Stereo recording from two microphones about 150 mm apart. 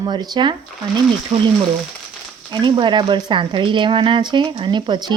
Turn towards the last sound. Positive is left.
turn(degrees=-30)  # may be behind; listen again after turning